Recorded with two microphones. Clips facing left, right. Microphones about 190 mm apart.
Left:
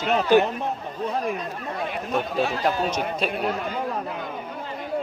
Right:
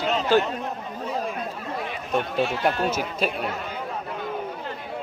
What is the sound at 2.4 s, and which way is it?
Speech, 60° right (ahead or behind).